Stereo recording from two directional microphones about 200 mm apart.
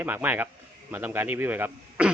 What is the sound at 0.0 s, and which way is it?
A man's voice, 10° right (ahead or behind).